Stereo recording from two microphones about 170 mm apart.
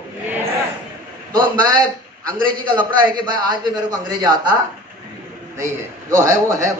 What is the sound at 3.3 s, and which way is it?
A man's voice, 25° right (ahead or behind).